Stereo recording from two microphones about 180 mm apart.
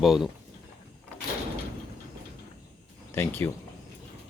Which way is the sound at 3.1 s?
10° left (ahead or behind).